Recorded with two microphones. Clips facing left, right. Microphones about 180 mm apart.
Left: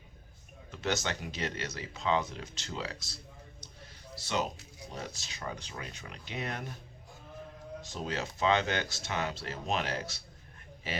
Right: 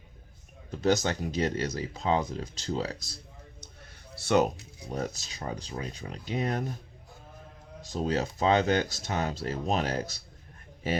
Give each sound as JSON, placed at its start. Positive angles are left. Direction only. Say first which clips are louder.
{"t": 0.7, "sound": "speech", "louder": "right 8 dB", "side_deg": -35}
{"t": 4.3, "sound": "speech", "louder": "right 9 dB", "side_deg": -55}
{"t": 5.4, "sound": "speech", "louder": "right 5 dB", "side_deg": -35}
{"t": 7.9, "sound": "speech", "louder": "right 8 dB", "side_deg": -40}